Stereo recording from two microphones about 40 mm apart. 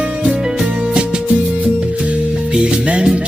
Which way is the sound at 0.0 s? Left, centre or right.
Right.